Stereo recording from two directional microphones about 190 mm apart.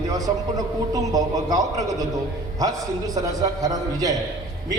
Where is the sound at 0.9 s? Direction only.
20° right (ahead or behind).